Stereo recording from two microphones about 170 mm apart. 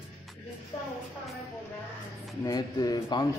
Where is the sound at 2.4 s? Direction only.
25° left (ahead or behind).